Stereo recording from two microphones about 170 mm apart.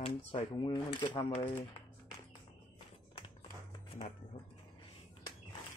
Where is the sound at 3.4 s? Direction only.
25° left (ahead or behind).